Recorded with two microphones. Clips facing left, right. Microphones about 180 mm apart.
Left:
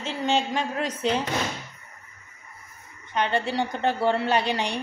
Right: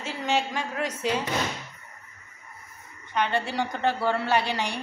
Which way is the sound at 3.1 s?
20° left (ahead or behind).